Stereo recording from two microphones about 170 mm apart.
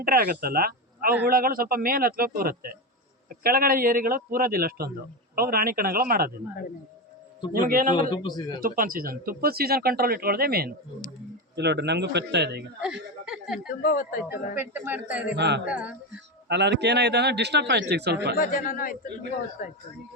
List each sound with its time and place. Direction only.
0.0 s speech: 60° right (ahead or behind)
7.5 s speech: 55° right (ahead or behind)
7.9 s a man's voice: 25° left (ahead or behind)
8.6 s speech: 55° right (ahead or behind)
11.5 s speech: 80° right
12.8 s a sound: 5° right (ahead or behind)
13.8 s a man's voice: 55° left (ahead or behind)
14.3 s speech: 10° right (ahead or behind)
15.4 s speech: 90° right
15.6 s speech: 10° right (ahead or behind)
16.5 s speech: 90° right
18.3 s a man's voice: 55° left (ahead or behind)